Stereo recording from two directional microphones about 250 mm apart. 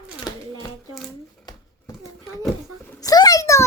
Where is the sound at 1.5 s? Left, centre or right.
Centre.